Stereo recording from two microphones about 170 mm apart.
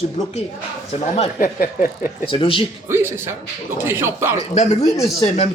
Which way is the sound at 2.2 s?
30° left (ahead or behind).